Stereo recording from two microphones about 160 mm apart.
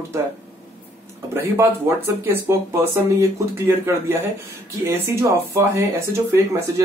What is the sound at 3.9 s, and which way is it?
Speech, 20° right (ahead or behind).